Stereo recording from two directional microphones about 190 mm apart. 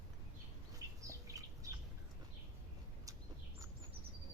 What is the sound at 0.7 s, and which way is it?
Bird, 15° right (ahead or behind).